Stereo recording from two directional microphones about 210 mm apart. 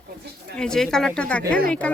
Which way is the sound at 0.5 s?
5° left (ahead or behind).